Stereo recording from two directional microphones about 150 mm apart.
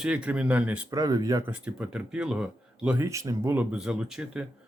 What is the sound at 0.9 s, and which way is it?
Speech, 25° right (ahead or behind).